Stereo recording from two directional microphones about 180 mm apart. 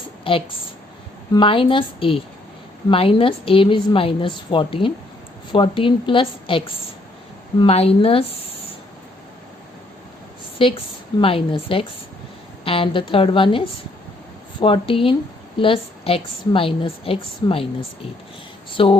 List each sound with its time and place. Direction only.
0.3 s a woman's voice: 30° left (ahead or behind)
7.6 s a woman's voice: 35° left (ahead or behind)
10.6 s a woman's voice: 30° left (ahead or behind)
14.6 s a woman's voice: 30° left (ahead or behind)